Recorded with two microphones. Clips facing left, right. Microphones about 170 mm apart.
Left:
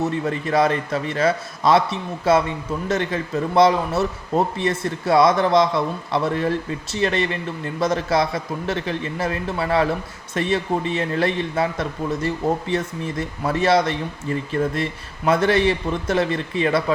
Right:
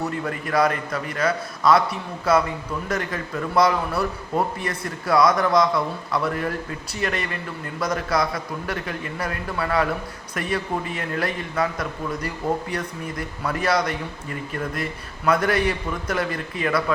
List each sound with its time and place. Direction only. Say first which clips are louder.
0.0 s a man's voice: left 4 dB; 25° left (ahead or behind)